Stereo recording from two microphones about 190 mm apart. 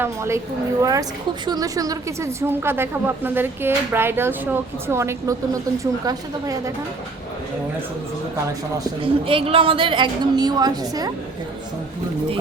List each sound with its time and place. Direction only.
0.0 s a woman's voice: 15° right (ahead or behind)
8.8 s a woman's voice: 25° right (ahead or behind)